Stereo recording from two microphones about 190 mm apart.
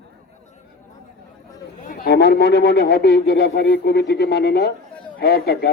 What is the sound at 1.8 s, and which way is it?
A man's voice, 45° left (ahead or behind).